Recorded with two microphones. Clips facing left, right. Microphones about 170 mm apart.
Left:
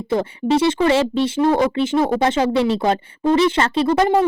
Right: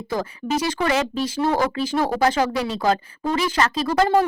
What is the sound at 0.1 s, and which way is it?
Speech, 30° left (ahead or behind).